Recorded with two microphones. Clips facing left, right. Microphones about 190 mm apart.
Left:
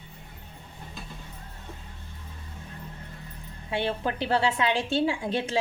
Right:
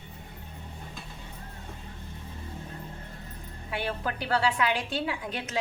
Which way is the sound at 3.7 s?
25° left (ahead or behind).